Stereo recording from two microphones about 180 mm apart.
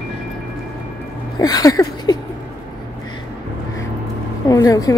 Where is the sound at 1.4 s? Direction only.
20° left (ahead or behind).